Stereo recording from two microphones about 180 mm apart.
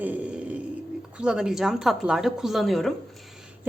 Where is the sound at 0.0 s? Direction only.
10° right (ahead or behind).